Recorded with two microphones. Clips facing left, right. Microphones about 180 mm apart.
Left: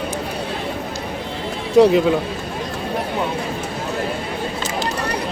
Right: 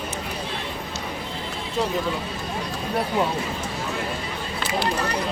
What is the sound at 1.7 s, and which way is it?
Speech, 70° left (ahead or behind).